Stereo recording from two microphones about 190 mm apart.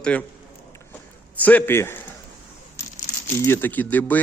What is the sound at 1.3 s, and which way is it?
Speech, 10° left (ahead or behind).